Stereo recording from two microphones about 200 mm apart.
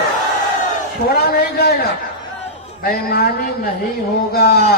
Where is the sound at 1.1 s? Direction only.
50° left (ahead or behind).